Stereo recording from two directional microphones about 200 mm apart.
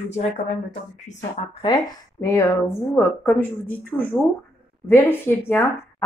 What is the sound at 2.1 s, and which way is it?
Speech, 10° left (ahead or behind).